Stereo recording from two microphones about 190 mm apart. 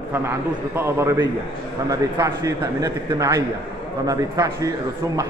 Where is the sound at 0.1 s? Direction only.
15° right (ahead or behind).